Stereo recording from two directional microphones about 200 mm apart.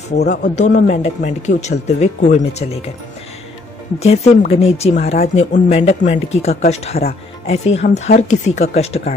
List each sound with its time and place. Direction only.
0.2 s speech: 55° left (ahead or behind)
0.7 s speech: 35° left (ahead or behind)
4.0 s speech: 30° left (ahead or behind)